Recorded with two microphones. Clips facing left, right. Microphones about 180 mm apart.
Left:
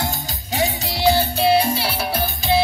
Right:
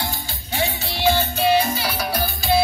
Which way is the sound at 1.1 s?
30° left (ahead or behind).